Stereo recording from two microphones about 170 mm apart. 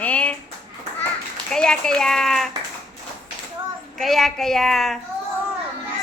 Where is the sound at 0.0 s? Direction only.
10° left (ahead or behind).